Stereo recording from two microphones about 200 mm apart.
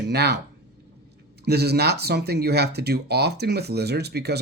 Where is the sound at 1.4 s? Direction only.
55° right (ahead or behind).